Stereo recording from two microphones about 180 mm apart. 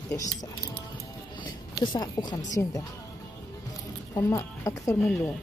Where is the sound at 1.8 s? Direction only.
20° left (ahead or behind).